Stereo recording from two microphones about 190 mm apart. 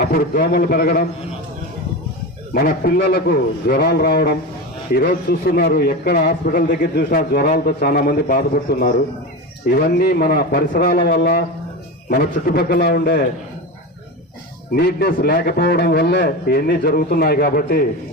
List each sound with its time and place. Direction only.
0.1 s a man's voice: 50° left (ahead or behind)
2.5 s a man's voice: 50° left (ahead or behind)
14.8 s a man's voice: 55° left (ahead or behind)